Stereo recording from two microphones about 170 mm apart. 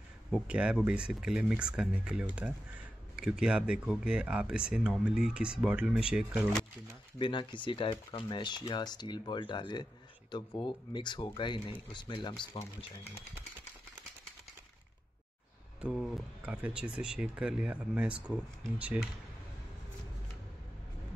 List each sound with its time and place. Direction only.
0.3 s speech: 5° right (ahead or behind)
7.2 s speech: 30° left (ahead or behind)
15.8 s speech: 5° right (ahead or behind)